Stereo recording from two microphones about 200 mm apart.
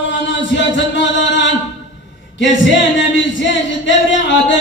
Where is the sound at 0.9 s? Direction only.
65° left (ahead or behind).